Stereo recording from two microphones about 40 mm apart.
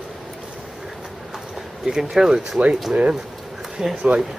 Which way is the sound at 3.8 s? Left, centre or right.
Centre.